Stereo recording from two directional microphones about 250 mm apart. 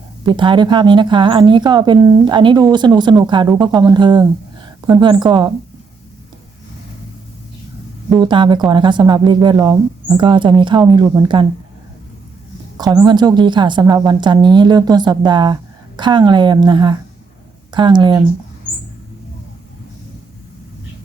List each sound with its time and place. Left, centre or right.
0.3 s speech: centre
8.2 s speech: centre
12.7 s speech: centre